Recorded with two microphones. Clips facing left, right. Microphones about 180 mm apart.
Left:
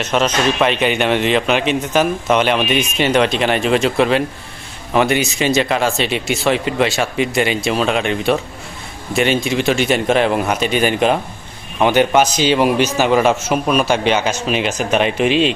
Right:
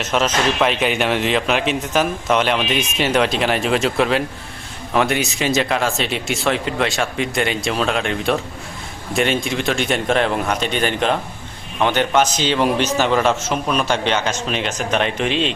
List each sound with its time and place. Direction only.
0.0 s a man's voice: centre (ahead or behind)